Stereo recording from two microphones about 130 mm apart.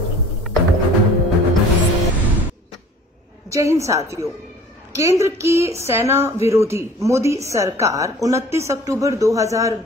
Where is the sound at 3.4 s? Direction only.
25° right (ahead or behind).